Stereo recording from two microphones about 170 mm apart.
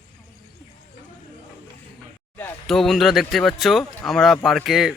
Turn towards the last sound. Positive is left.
turn(degrees=0)  # may be behind; listen again after turning